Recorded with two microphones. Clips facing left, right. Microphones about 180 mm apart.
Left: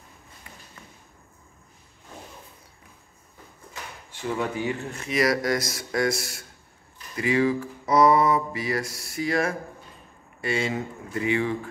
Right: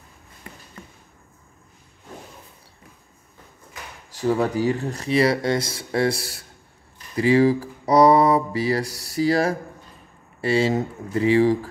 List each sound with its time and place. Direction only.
4.1 s speech: 40° right (ahead or behind)